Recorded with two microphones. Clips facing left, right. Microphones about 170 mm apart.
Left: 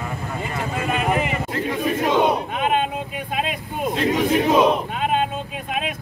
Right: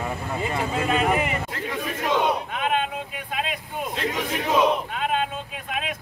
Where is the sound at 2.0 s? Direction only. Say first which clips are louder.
Left 3 dB; 20° left (ahead or behind).